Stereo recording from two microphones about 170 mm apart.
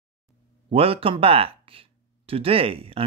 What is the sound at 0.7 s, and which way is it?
Speech, 35° right (ahead or behind).